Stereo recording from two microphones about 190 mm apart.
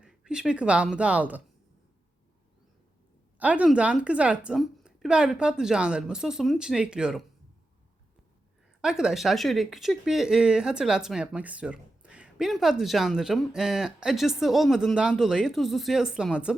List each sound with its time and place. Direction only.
0.0 s speech: 5° right (ahead or behind)
3.3 s speech: 5° right (ahead or behind)
8.8 s speech: 5° right (ahead or behind)